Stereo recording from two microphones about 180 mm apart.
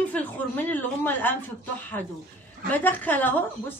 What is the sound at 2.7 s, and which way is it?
Speech, 10° left (ahead or behind).